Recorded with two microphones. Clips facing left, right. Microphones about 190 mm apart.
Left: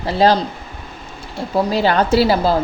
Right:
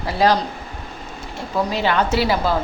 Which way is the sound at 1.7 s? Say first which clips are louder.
Left 5 dB; 35° left (ahead or behind).